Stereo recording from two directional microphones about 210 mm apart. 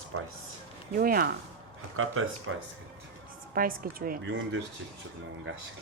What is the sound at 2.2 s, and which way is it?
Speech, 85° right.